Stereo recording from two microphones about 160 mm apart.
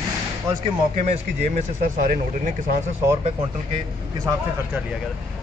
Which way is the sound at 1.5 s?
55° right (ahead or behind).